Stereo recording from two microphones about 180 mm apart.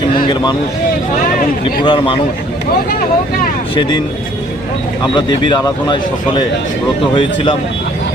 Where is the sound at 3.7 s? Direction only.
25° left (ahead or behind).